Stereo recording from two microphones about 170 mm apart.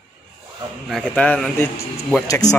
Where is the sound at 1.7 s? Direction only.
20° left (ahead or behind).